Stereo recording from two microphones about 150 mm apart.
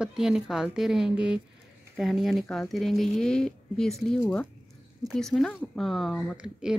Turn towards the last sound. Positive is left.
turn(degrees=-5)  # may be behind; listen again after turning